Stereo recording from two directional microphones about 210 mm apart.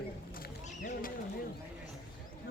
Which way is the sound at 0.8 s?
40° left (ahead or behind).